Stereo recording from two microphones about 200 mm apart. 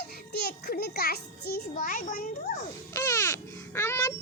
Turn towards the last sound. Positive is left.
turn(degrees=15)  # may be behind; listen again after turning